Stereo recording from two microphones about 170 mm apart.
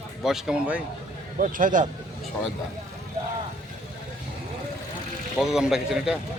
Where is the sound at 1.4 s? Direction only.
50° right (ahead or behind).